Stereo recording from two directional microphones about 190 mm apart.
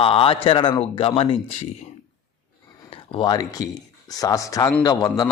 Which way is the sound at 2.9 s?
30° left (ahead or behind).